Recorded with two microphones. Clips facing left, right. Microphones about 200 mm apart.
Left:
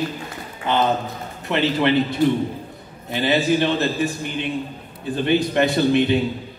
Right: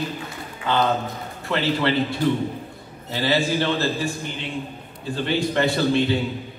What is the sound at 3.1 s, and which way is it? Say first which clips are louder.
A man's voice: left 3 dB; 20° left (ahead or behind).